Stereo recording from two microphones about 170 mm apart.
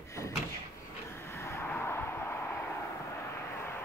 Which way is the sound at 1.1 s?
15° left (ahead or behind).